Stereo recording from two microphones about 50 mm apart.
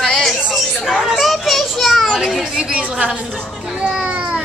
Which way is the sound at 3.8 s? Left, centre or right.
Right.